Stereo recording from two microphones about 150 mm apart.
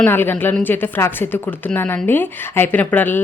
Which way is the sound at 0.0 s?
15° left (ahead or behind).